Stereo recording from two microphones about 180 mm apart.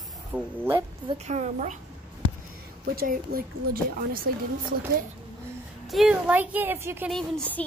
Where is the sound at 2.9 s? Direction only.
55° right (ahead or behind).